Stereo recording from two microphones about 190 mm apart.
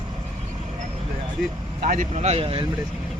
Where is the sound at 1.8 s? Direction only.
40° right (ahead or behind).